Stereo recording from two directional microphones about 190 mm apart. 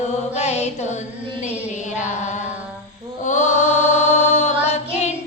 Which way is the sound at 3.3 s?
40° left (ahead or behind).